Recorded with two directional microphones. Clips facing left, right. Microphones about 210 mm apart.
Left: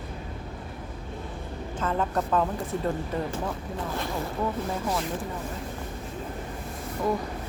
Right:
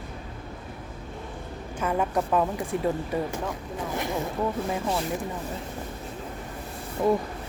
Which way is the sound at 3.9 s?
15° right (ahead or behind).